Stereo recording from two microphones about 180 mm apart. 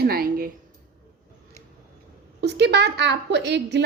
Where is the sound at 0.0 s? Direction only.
55° right (ahead or behind).